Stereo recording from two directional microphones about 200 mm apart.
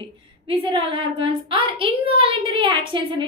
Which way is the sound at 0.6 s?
25° right (ahead or behind).